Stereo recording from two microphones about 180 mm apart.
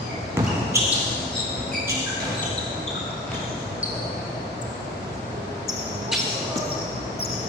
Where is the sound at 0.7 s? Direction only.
15° right (ahead or behind).